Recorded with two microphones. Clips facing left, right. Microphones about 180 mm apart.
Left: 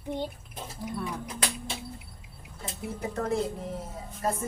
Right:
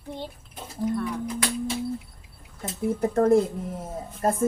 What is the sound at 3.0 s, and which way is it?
Speech, 50° right (ahead or behind).